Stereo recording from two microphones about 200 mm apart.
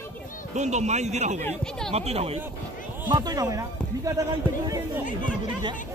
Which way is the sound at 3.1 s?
20° right (ahead or behind).